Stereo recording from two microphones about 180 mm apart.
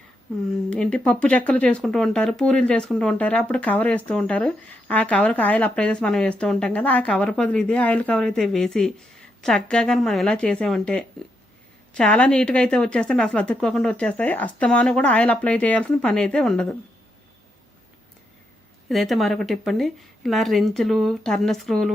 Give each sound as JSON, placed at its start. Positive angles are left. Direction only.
{"t": 0.5, "sound": "speech", "side_deg": 5}
{"t": 18.9, "sound": "speech", "side_deg": 0}